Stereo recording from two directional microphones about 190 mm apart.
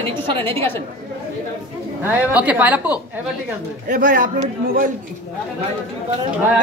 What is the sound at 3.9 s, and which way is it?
Speech, 45° right (ahead or behind).